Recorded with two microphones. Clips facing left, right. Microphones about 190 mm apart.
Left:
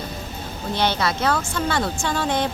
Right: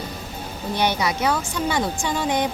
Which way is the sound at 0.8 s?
15° right (ahead or behind).